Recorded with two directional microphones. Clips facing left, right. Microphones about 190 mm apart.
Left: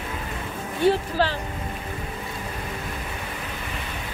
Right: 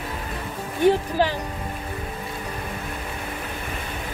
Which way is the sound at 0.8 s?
15° right (ahead or behind).